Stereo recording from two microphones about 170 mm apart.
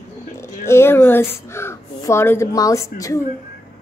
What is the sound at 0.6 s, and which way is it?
Speech, 15° left (ahead or behind).